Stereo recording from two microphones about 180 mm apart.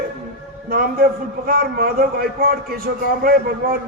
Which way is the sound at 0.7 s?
55° right (ahead or behind).